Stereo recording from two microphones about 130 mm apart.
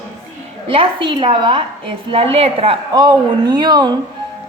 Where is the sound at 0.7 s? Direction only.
40° right (ahead or behind).